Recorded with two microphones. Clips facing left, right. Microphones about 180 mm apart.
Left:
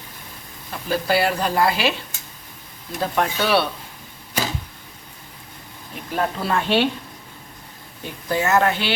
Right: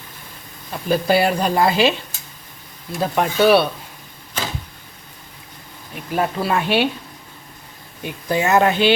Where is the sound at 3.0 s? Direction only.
15° right (ahead or behind).